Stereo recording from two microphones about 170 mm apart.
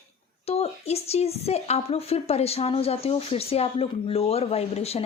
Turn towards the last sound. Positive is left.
turn(degrees=35)  # may be behind; listen again after turning